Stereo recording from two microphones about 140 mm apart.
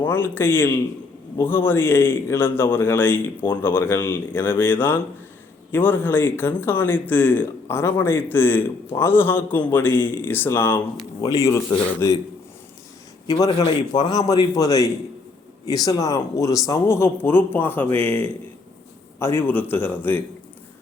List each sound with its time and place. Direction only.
0.0 s speech: 15° left (ahead or behind)
11.2 s speech: 25° left (ahead or behind)
13.2 s speech: 30° left (ahead or behind); by 20.2 s 15° left (ahead or behind)